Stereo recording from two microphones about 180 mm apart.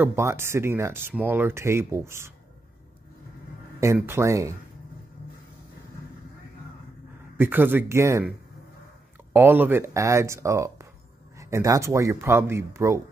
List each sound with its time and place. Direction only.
0.0 s speech: 15° right (ahead or behind)
3.8 s speech: 15° right (ahead or behind)
7.3 s speech: 10° right (ahead or behind)
9.3 s speech: 10° right (ahead or behind)